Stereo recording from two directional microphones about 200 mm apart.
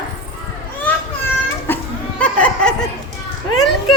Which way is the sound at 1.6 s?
10° left (ahead or behind).